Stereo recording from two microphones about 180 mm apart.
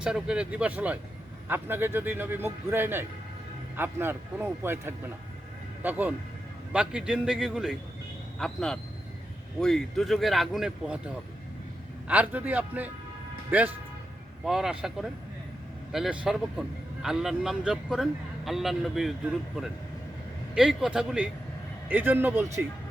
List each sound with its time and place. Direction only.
0.0 s a man's voice: 5° right (ahead or behind)
12.0 s a man's voice: 10° right (ahead or behind)